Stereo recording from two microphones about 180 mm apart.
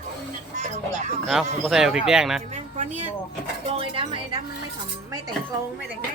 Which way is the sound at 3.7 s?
30° right (ahead or behind).